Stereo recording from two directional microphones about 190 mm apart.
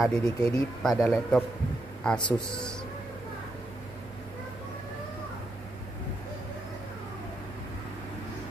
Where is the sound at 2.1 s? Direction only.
25° left (ahead or behind).